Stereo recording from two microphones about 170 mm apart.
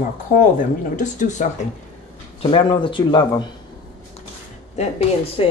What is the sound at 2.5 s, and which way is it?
Speech, 30° left (ahead or behind).